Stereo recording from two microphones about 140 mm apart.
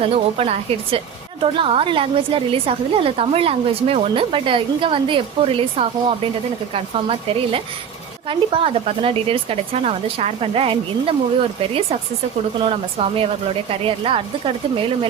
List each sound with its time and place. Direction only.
0.0 s a woman's voice: 45° right (ahead or behind)
12.5 s a woman's voice: 40° right (ahead or behind)